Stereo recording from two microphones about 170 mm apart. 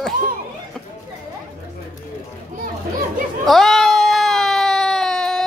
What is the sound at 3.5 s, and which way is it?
Baby cry, centre (ahead or behind).